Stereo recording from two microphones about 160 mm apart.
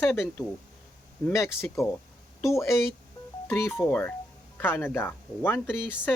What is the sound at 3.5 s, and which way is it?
Speech, 15° left (ahead or behind).